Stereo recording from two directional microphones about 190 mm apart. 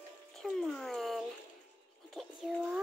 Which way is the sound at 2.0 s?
Centre (ahead or behind).